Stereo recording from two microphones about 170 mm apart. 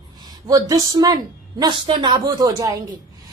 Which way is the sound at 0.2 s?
20° right (ahead or behind).